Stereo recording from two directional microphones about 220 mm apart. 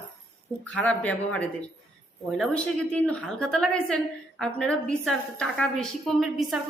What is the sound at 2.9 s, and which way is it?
A woman's voice, 5° left (ahead or behind).